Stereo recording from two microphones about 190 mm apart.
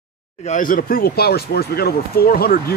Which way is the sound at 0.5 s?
45° left (ahead or behind).